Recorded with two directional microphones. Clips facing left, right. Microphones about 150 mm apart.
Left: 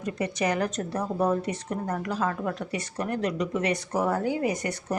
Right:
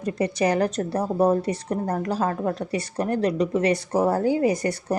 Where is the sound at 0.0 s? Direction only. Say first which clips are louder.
Right 5 dB; 35° right (ahead or behind).